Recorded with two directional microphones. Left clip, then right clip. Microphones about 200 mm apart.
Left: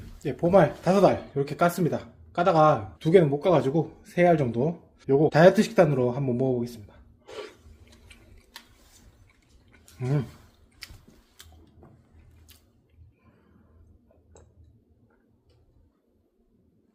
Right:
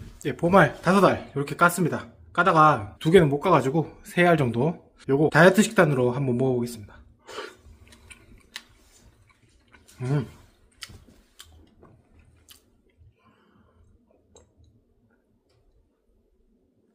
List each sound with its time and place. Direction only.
0.2 s speech: 25° right (ahead or behind)
3.0 s speech: 25° right (ahead or behind)
10.0 s speech: 15° right (ahead or behind)
10.8 s a sound: 10° right (ahead or behind)